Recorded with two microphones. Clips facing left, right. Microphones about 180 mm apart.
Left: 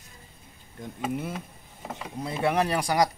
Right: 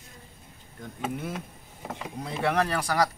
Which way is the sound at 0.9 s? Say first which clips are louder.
Left 1 dB; 5° left (ahead or behind).